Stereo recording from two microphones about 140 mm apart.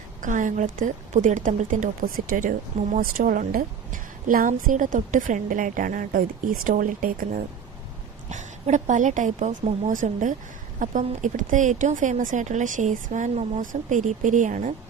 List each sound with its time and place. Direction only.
0.2 s a woman's voice: 65° right (ahead or behind)
8.3 s speech: 60° right (ahead or behind)